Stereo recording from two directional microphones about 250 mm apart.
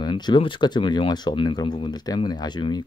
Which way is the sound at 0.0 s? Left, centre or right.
Centre.